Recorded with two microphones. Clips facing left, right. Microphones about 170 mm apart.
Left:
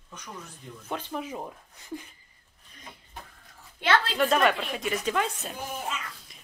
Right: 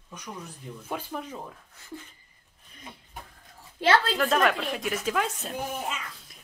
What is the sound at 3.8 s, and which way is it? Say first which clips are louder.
Speech: right 2 dB; 30° right (ahead or behind).